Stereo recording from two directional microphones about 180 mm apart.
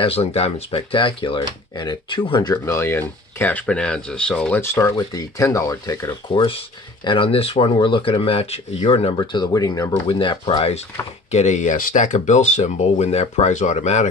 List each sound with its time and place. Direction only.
0.0 s speech: 35° left (ahead or behind); by 6.4 s 15° left (ahead or behind)
7.1 s speech: 30° left (ahead or behind)